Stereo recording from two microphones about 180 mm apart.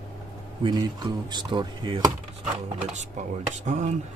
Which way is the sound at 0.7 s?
25° right (ahead or behind).